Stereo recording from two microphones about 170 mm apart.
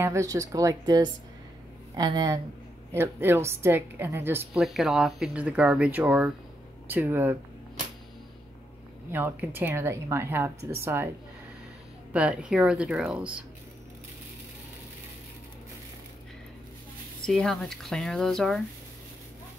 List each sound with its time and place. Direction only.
0.0 s speech: 15° right (ahead or behind)
4.6 s speech: centre (ahead or behind)
9.1 s speech: 10° right (ahead or behind)
12.1 s speech: 5° right (ahead or behind)
17.3 s speech: centre (ahead or behind)